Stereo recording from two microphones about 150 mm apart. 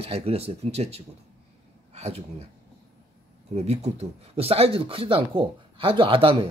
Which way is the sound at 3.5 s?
45° right (ahead or behind).